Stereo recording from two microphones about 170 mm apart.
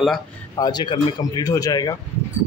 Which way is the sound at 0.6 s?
25° left (ahead or behind).